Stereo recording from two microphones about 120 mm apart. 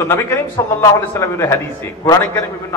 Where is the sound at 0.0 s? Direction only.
20° left (ahead or behind).